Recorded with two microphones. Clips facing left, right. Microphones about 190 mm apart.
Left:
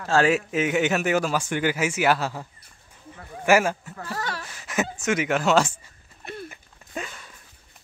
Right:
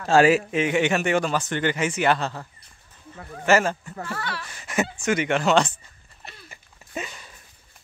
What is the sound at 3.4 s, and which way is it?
Speech, 10° left (ahead or behind).